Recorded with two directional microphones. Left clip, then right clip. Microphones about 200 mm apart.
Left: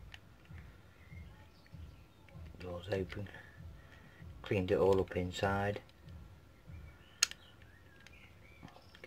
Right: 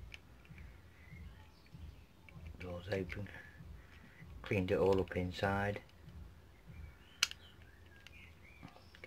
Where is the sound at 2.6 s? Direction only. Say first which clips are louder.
Left 2 dB; 15° left (ahead or behind).